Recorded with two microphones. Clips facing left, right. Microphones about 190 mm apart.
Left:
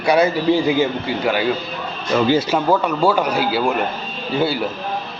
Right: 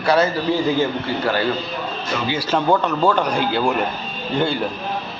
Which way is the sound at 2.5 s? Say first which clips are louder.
Left 1 dB; 10° left (ahead or behind).